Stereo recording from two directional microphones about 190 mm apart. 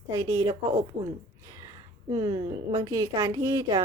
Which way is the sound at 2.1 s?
20° right (ahead or behind).